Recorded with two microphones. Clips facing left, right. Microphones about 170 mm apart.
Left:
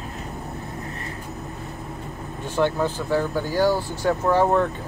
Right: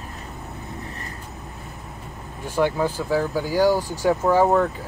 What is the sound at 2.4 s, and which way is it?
Speech, 10° right (ahead or behind).